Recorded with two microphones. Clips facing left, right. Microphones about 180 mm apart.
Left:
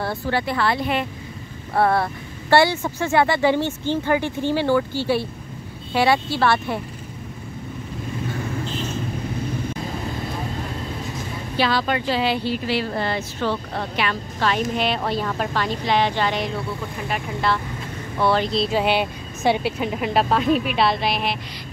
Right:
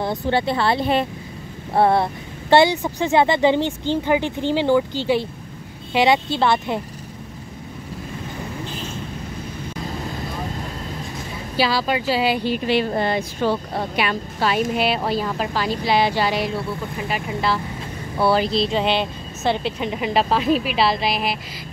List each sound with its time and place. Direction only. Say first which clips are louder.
0.0 s speech: right 3 dB; 20° right (ahead or behind)
11.5 s speech: right 1 dB; 5° right (ahead or behind)